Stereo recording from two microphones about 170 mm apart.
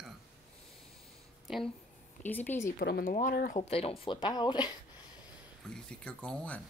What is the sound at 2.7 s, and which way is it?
Speech, 65° left (ahead or behind).